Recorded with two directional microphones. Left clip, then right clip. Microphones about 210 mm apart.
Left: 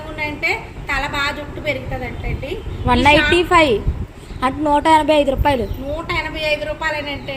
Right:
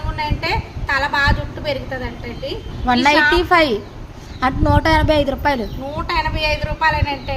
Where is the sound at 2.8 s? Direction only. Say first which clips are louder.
Even; 10° right (ahead or behind).